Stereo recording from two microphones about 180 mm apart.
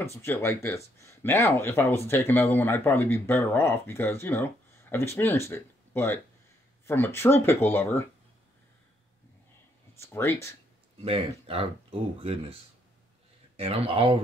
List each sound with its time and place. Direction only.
0.2 s speech: 15° left (ahead or behind)
10.1 s speech: 15° left (ahead or behind)
11.1 s speech: 30° right (ahead or behind)
13.6 s speech: 30° right (ahead or behind)